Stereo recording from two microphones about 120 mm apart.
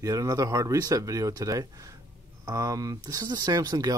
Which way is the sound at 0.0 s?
30° right (ahead or behind).